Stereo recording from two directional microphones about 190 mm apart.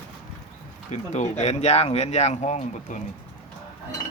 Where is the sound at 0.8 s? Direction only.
40° left (ahead or behind).